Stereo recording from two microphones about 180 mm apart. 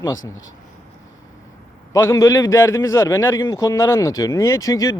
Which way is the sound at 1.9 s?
15° left (ahead or behind).